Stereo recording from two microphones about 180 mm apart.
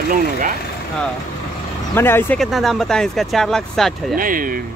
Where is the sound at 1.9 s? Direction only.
10° left (ahead or behind).